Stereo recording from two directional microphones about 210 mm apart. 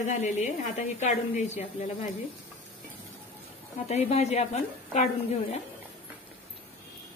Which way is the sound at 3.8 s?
30° left (ahead or behind).